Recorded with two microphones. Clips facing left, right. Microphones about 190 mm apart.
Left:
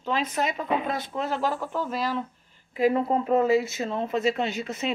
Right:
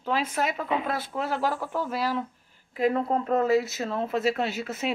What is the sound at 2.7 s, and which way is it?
Speech, centre (ahead or behind).